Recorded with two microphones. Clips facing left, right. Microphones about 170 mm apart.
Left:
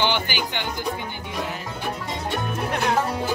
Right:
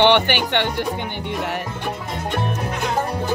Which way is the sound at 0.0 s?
70° right (ahead or behind).